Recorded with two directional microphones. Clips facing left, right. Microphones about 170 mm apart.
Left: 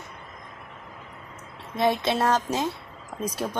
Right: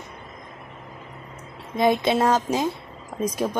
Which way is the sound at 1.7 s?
15° right (ahead or behind).